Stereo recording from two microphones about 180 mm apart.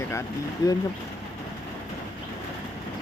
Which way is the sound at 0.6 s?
25° left (ahead or behind).